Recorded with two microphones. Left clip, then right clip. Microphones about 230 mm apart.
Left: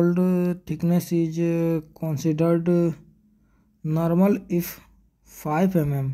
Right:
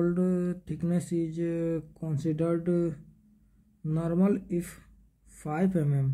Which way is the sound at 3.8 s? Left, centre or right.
Left.